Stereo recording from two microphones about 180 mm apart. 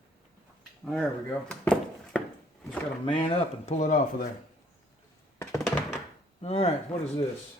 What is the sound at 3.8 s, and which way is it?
Speech, 45° left (ahead or behind).